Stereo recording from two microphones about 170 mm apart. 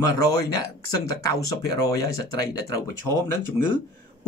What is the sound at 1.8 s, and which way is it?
Speech, 20° left (ahead or behind).